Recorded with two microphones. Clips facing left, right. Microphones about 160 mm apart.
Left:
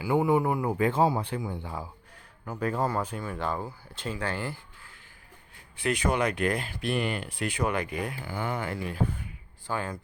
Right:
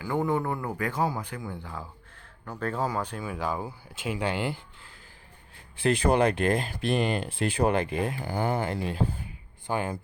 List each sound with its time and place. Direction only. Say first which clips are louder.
0.0 s speech: left 3 dB; 10° left (ahead or behind); by 4.6 s 20° right (ahead or behind)
5.8 s speech: right 4 dB; 30° right (ahead or behind)
8.2 s speech: right 4 dB; 40° right (ahead or behind)
9.6 s speech: right 3 dB; 20° right (ahead or behind)